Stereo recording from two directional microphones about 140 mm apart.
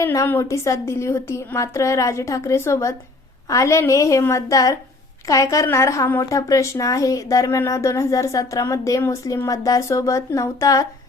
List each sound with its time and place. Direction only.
0.0 s speech: 20° left (ahead or behind)